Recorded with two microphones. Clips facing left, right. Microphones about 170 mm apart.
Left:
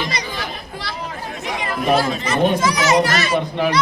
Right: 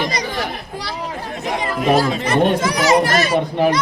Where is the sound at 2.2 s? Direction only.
60° right (ahead or behind).